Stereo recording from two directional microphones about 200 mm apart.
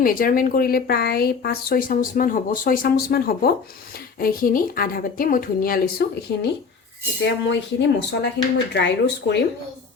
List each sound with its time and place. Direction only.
0.0 s speech: 45° left (ahead or behind)
7.4 s speech: 60° left (ahead or behind)